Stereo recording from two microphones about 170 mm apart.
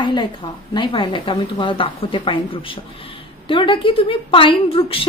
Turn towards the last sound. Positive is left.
turn(degrees=30)  # may be behind; listen again after turning